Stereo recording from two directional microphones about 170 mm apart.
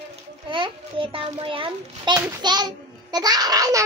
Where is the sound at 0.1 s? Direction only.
30° right (ahead or behind).